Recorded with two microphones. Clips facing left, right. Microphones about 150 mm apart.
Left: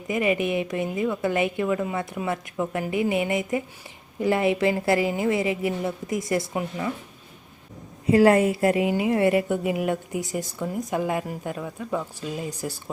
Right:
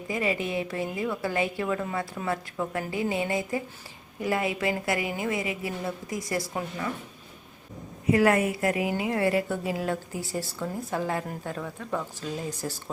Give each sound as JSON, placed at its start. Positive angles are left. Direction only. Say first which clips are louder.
{"t": 0.1, "sound": "a woman's voice", "louder": "left 5 dB", "side_deg": 20}
{"t": 8.1, "sound": "a woman's voice", "louder": "left 5 dB", "side_deg": 30}